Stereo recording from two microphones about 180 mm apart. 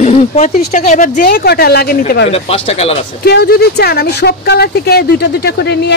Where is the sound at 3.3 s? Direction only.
60° left (ahead or behind).